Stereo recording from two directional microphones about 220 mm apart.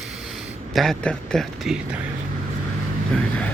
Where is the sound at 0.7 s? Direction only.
Centre (ahead or behind).